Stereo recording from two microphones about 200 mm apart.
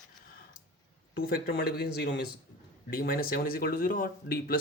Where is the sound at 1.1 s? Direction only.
50° left (ahead or behind).